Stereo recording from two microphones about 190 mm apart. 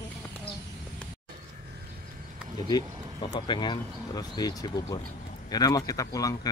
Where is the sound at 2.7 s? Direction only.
20° left (ahead or behind).